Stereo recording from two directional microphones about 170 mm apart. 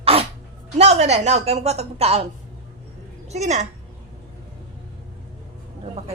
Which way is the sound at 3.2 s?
40° right (ahead or behind).